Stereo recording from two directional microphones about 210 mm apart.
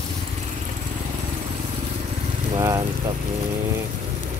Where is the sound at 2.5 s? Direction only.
15° right (ahead or behind).